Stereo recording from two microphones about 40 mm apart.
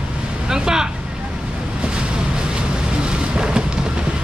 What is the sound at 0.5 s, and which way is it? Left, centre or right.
Speech, centre.